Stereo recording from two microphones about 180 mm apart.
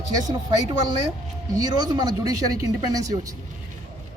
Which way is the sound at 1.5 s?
25° right (ahead or behind).